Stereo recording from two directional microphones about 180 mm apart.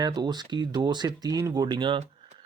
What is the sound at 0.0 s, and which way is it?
Speech, 25° right (ahead or behind).